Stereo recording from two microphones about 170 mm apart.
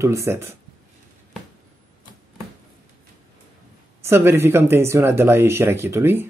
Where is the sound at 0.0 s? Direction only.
15° right (ahead or behind).